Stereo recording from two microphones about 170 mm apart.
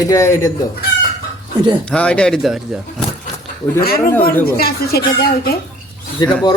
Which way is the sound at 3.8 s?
60° left (ahead or behind).